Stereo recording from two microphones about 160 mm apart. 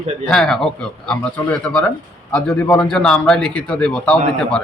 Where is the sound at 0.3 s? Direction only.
5° left (ahead or behind).